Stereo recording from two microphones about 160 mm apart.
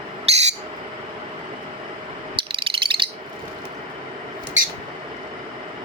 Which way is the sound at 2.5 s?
35° right (ahead or behind).